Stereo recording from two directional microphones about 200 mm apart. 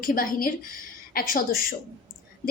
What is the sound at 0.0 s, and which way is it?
A woman's voice, 45° left (ahead or behind).